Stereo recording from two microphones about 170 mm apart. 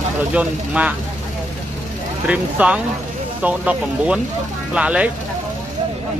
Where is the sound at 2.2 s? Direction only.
10° right (ahead or behind).